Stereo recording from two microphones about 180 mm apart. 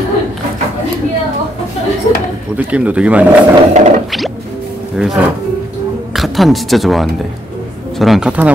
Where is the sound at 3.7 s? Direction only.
40° right (ahead or behind).